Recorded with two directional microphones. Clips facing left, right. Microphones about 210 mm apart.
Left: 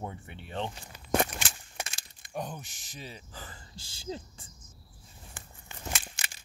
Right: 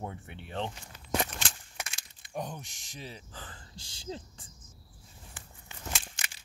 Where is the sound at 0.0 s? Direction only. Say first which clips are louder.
Even; centre (ahead or behind).